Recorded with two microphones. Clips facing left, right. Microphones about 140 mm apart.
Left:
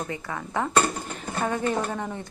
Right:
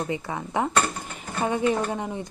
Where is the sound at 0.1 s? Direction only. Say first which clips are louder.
Right 3 dB; 20° right (ahead or behind).